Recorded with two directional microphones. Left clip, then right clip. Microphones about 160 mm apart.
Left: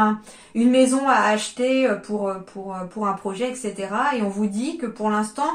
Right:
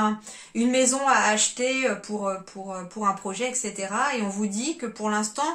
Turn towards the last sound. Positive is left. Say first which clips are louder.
# left 3 dB
turn(degrees=-20)  # may be behind; listen again after turning